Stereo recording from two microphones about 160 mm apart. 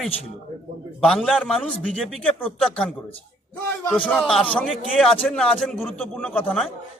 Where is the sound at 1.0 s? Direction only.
5° left (ahead or behind).